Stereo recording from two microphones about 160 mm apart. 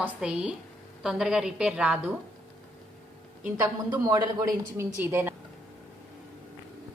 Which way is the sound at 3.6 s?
25° right (ahead or behind).